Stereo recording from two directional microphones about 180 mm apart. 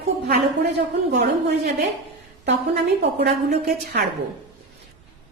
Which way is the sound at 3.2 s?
60° right (ahead or behind).